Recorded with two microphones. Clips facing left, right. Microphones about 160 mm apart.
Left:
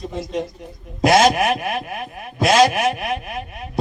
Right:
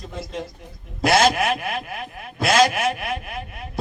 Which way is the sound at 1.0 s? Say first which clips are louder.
Left 3 dB; 20° left (ahead or behind).